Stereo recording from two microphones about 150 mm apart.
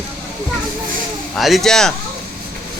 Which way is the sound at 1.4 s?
Centre (ahead or behind).